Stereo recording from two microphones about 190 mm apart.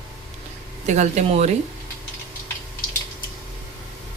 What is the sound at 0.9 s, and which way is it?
Speech, 40° right (ahead or behind).